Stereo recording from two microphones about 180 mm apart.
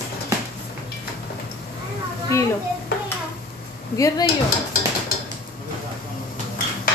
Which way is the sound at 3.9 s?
20° left (ahead or behind).